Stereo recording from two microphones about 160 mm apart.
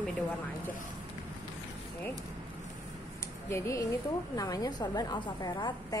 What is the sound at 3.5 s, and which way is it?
A woman's voice, 20° left (ahead or behind).